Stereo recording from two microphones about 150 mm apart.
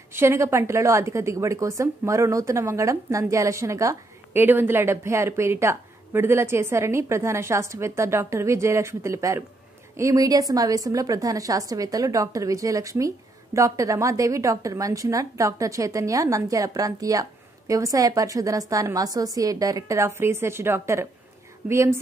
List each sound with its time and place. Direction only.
0.1 s a woman's voice: 15° right (ahead or behind)